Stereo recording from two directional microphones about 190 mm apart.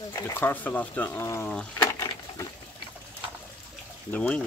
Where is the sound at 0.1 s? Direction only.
10° left (ahead or behind).